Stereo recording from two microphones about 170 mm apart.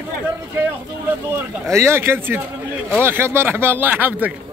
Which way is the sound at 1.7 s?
15° right (ahead or behind).